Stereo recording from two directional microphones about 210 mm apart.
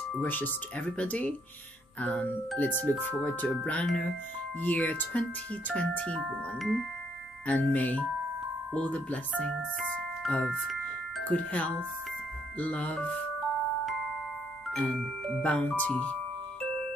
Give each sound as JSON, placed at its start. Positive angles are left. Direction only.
{"t": 0.1, "sound": "speech", "side_deg": 10}
{"t": 14.7, "sound": "speech", "side_deg": 5}